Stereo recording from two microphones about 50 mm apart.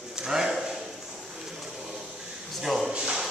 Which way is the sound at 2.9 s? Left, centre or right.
Centre.